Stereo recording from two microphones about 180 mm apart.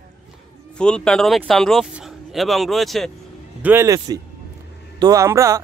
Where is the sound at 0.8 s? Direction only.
5° left (ahead or behind).